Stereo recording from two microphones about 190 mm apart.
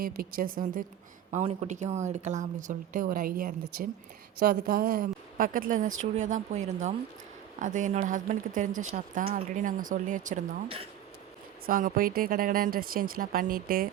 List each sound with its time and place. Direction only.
0.0 s a woman's voice: 50° right (ahead or behind)
11.6 s a woman's voice: 50° right (ahead or behind)